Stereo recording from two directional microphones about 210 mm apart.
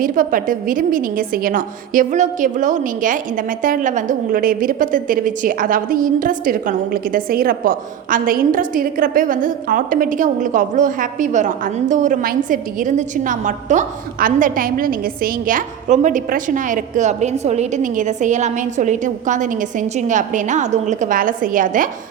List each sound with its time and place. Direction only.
0.0 s a woman's voice: 40° right (ahead or behind)